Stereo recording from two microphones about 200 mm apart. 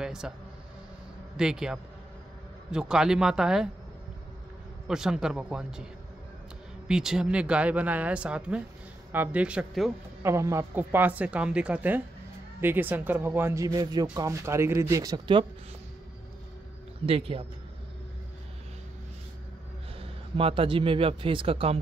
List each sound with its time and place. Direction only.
0.0 s a sound: 5° right (ahead or behind)
1.3 s speech: 5° right (ahead or behind)
4.8 s speech: 5° right (ahead or behind)
6.9 s speech: 5° right (ahead or behind)
10.2 s a woman's voice: 15° right (ahead or behind)
17.0 s speech: 30° right (ahead or behind)
20.0 s a man's voice: 25° right (ahead or behind)